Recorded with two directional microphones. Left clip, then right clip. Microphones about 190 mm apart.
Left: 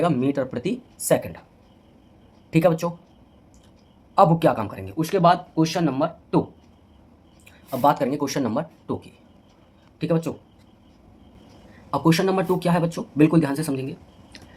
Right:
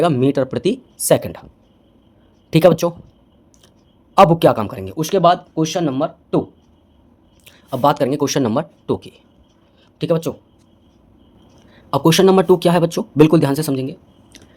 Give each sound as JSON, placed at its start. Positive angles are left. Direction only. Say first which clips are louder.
{"t": 0.0, "sound": "a man's voice", "louder": "right 6 dB", "side_deg": -55}
{"t": 2.5, "sound": "speech", "louder": "right 7 dB", "side_deg": -55}
{"t": 4.1, "sound": "a man's voice", "louder": "right 6 dB", "side_deg": -60}
{"t": 7.4, "sound": "a man's voice", "louder": "right 4 dB", "side_deg": -55}
{"t": 11.9, "sound": "speech", "louder": "right 8 dB", "side_deg": -55}